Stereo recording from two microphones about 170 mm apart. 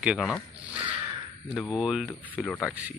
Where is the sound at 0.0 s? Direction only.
5° right (ahead or behind).